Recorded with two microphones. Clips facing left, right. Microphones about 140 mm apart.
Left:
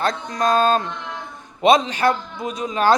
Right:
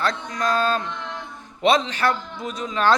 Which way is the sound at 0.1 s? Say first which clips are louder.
Left 3 dB; 35° left (ahead or behind).